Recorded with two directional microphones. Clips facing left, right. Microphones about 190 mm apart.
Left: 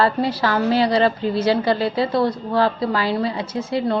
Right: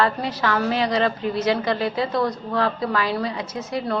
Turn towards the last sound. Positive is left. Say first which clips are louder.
# left 4 dB
turn(degrees=25)  # may be behind; listen again after turning